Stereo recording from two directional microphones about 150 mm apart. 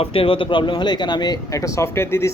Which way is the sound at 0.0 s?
40° left (ahead or behind).